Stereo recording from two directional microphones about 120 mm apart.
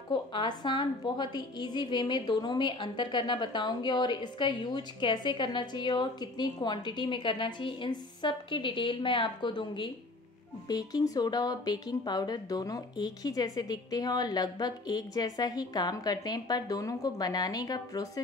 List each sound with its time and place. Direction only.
0.1 s a woman's voice: 40° left (ahead or behind)